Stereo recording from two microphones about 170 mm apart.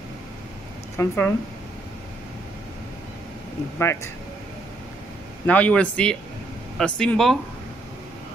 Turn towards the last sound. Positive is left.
turn(degrees=5)  # may be behind; listen again after turning